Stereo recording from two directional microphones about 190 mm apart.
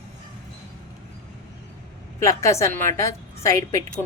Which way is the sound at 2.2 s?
15° left (ahead or behind).